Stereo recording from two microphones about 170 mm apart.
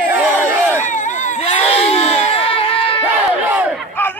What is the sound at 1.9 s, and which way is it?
Crowd, 35° left (ahead or behind).